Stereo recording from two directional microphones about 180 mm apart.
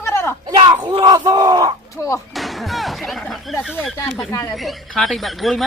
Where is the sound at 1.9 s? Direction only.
15° left (ahead or behind).